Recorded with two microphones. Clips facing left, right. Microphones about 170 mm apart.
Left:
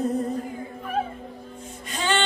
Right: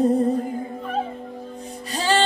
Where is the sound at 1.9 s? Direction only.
35° right (ahead or behind).